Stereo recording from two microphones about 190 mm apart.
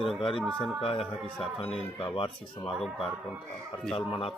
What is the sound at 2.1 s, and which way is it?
Speech, 25° left (ahead or behind).